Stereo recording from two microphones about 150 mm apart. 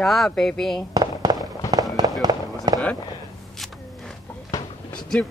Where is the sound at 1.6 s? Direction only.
20° left (ahead or behind).